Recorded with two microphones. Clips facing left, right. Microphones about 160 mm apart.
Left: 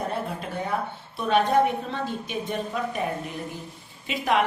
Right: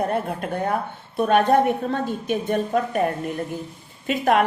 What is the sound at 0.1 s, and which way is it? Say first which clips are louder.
A woman's voice: right 5 dB; 55° right (ahead or behind).